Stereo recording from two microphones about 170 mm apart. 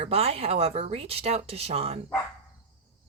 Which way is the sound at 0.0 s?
35° right (ahead or behind).